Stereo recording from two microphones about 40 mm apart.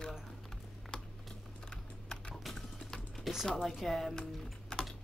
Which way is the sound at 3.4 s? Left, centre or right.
Centre.